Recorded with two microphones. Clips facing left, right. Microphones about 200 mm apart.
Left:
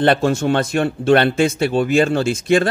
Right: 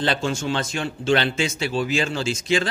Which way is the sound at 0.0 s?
60° left (ahead or behind).